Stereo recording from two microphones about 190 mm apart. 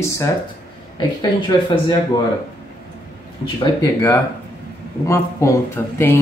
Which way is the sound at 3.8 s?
15° left (ahead or behind).